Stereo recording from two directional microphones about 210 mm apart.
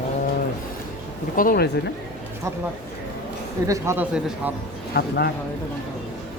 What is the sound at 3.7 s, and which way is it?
Speech, 15° right (ahead or behind).